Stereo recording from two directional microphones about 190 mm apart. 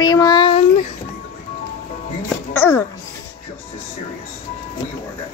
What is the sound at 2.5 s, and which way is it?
Babbling, 10° left (ahead or behind).